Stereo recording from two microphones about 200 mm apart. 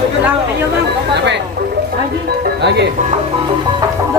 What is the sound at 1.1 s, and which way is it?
Speech, 60° right (ahead or behind).